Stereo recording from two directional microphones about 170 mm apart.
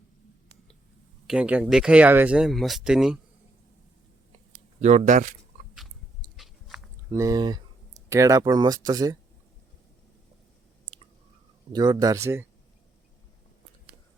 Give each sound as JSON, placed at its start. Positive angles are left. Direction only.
{"t": 1.3, "sound": "speech", "side_deg": -5}
{"t": 4.8, "sound": "speech", "side_deg": -45}
{"t": 6.3, "sound": "biting", "side_deg": 0}
{"t": 7.1, "sound": "speech", "side_deg": -20}
{"t": 11.7, "sound": "speech", "side_deg": -25}